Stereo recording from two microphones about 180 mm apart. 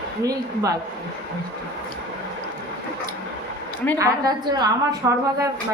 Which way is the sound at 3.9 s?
20° right (ahead or behind).